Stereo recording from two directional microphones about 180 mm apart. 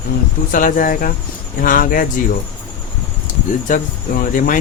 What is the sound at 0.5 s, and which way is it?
Speech, 50° left (ahead or behind).